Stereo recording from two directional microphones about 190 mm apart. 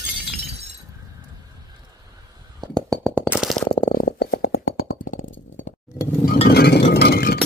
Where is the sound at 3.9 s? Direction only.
55° left (ahead or behind).